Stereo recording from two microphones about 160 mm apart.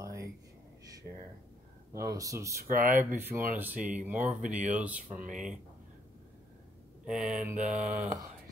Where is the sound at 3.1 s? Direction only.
15° right (ahead or behind).